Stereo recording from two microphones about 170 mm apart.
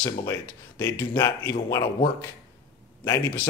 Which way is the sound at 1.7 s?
25° left (ahead or behind).